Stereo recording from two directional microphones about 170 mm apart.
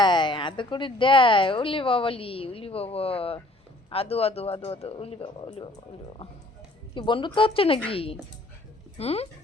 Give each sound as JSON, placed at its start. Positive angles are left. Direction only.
{"t": 0.0, "sound": "speech", "side_deg": 25}
{"t": 6.9, "sound": "speech", "side_deg": 30}